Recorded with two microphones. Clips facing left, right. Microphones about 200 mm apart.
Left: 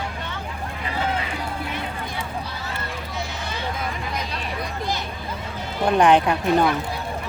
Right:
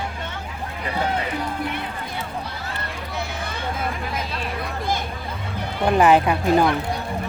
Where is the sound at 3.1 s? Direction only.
55° right (ahead or behind).